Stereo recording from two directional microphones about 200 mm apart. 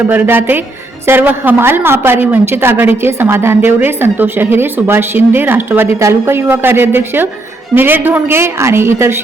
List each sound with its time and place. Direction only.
0.1 s a woman's voice: 10° right (ahead or behind)